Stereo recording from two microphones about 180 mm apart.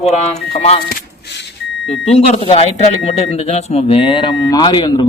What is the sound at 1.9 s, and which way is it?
Speech, 35° left (ahead or behind).